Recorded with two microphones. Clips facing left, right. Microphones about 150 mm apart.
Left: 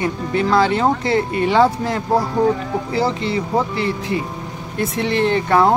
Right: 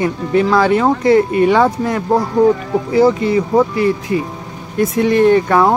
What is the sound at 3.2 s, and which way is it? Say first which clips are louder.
Speech: right 6 dB; 25° left (ahead or behind).